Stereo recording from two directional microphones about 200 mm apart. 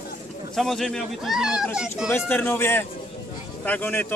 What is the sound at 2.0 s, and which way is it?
Speech, 10° left (ahead or behind).